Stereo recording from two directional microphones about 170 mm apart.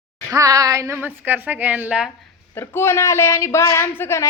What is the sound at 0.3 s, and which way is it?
A woman's voice, 20° right (ahead or behind).